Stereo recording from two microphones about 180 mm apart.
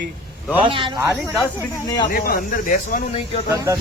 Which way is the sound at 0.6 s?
25° right (ahead or behind).